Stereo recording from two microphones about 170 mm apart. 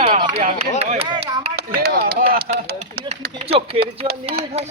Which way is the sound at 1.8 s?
60° right (ahead or behind).